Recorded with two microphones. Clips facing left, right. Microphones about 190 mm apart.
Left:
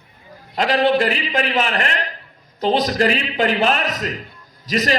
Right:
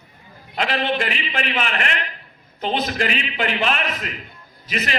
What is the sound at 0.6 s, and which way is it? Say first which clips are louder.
A man's voice: left 6 dB; 40° left (ahead or behind).